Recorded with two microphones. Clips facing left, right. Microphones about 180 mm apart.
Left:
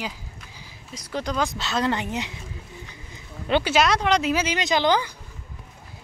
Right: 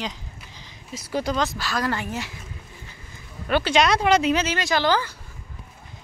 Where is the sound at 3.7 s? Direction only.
Centre (ahead or behind).